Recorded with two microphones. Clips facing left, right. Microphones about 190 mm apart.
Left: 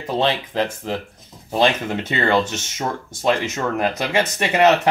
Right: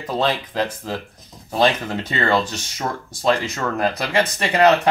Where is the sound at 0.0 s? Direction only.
25° left (ahead or behind).